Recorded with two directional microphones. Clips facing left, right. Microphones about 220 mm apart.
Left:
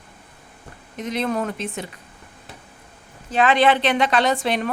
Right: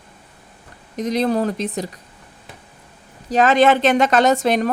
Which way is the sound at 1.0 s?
35° right (ahead or behind).